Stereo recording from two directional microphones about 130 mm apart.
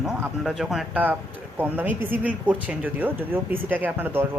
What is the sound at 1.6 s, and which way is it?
Speech, 15° right (ahead or behind).